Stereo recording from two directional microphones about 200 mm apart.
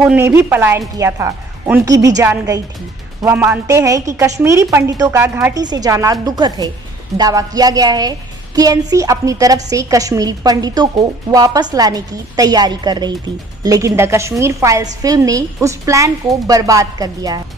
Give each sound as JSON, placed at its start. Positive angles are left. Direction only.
{"t": 0.0, "sound": "a woman's voice", "side_deg": -10}